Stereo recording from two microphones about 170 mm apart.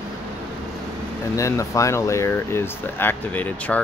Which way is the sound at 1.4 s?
20° left (ahead or behind).